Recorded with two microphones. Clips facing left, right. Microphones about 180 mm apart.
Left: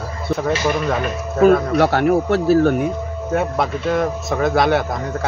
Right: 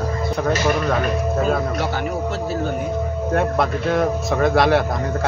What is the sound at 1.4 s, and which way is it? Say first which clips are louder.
Speech: left 13 dB; 65° left (ahead or behind).